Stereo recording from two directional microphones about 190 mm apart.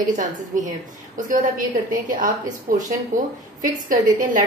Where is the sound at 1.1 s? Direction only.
45° right (ahead or behind).